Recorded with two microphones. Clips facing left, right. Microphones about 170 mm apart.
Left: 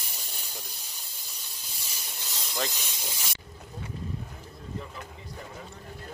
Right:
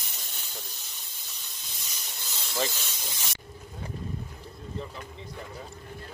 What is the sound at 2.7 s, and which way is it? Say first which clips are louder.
Speech: right 1 dB; 15° left (ahead or behind).